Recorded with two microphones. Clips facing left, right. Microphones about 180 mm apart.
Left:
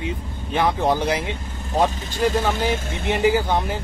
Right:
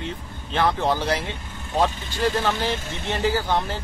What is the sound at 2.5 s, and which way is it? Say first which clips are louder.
Speech: left 3 dB; 50° left (ahead or behind).